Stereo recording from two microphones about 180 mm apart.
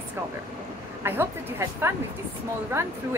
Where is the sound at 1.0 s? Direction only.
15° right (ahead or behind).